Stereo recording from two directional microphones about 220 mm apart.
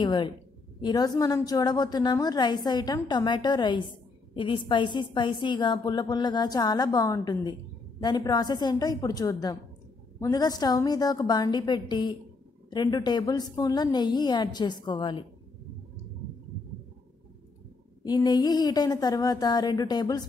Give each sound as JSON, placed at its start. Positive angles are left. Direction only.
{"t": 0.0, "sound": "a woman's voice", "side_deg": 20}
{"t": 18.0, "sound": "speech", "side_deg": 20}